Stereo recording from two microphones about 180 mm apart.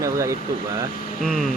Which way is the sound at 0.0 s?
15° right (ahead or behind).